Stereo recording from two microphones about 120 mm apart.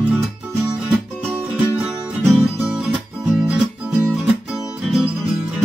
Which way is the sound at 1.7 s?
10° right (ahead or behind).